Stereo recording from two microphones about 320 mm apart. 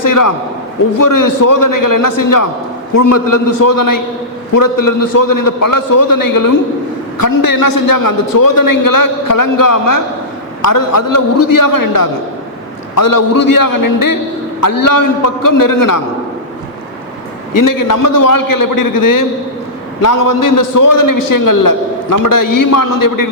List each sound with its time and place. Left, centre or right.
0.0 s a man's voice: left
2.9 s a man's voice: left
10.6 s a man's voice: left
13.1 s a man's voice: left
15.4 s a man's voice: left
17.6 s a man's voice: left